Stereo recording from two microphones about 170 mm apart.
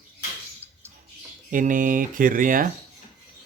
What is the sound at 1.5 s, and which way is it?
Speech, 50° right (ahead or behind).